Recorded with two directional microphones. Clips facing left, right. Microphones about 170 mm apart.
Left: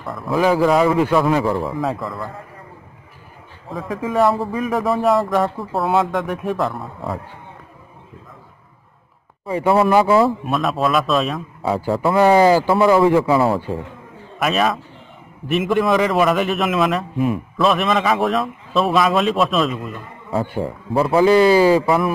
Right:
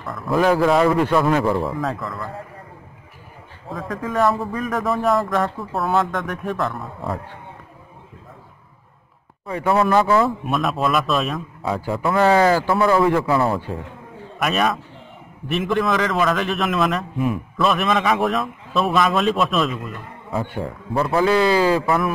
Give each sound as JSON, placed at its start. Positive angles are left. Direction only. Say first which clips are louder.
{"t": 0.3, "sound": "a man's voice", "louder": "left 1 dB", "side_deg": 0}
{"t": 3.7, "sound": "a man's voice", "louder": "left 3 dB", "side_deg": 0}
{"t": 9.7, "sound": "speech", "louder": "left 3 dB", "side_deg": 25}
{"t": 9.9, "sound": "speech", "louder": "left 2 dB", "side_deg": 10}
{"t": 10.2, "sound": "a man's voice", "louder": "left 2 dB", "side_deg": 0}
{"t": 12.1, "sound": "speech", "louder": "left 3 dB", "side_deg": 15}
{"t": 12.9, "sound": "a man's voice", "louder": "left 3 dB", "side_deg": 5}